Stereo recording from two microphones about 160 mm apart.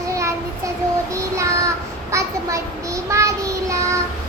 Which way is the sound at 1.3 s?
20° right (ahead or behind).